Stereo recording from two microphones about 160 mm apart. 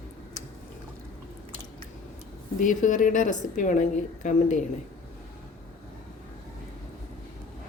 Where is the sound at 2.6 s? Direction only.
55° left (ahead or behind).